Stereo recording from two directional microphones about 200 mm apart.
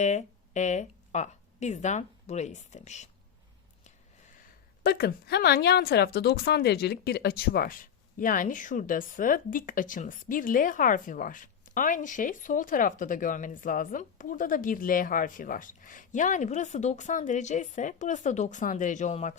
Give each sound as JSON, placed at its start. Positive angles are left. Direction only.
{"t": 0.0, "sound": "speech", "side_deg": 35}
{"t": 4.8, "sound": "a woman's voice", "side_deg": 50}